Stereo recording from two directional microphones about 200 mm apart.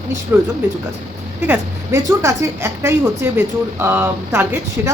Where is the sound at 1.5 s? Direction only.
15° right (ahead or behind).